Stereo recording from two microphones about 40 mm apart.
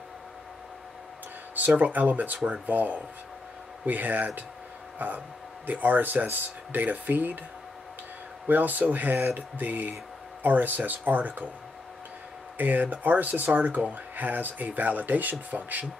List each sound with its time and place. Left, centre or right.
1.8 s speech: right
4.9 s a sound: right
5.7 s speech: right
8.5 s speech: right
12.5 s speech: right
13.6 s speech: right